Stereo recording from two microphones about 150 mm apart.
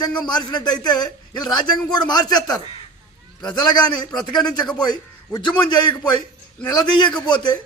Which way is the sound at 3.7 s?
30° left (ahead or behind).